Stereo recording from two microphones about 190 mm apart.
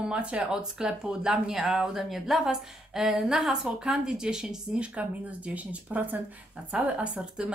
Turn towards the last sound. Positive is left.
turn(degrees=-5)  # may be behind; listen again after turning